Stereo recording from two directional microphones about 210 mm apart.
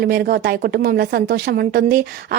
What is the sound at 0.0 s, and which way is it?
A woman's voice, 50° right (ahead or behind).